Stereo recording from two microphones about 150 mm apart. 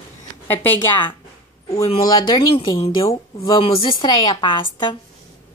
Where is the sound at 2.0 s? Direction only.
25° left (ahead or behind).